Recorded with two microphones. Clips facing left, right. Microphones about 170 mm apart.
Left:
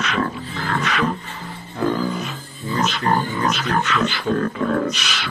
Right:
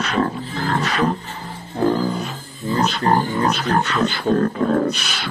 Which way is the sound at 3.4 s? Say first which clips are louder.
Right 2 dB; 35° right (ahead or behind).